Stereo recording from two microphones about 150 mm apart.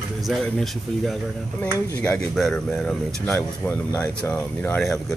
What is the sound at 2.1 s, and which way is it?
Speech, 5° left (ahead or behind).